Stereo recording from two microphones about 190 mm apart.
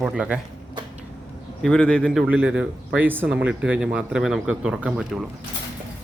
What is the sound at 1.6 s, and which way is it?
Speech, 5° left (ahead or behind).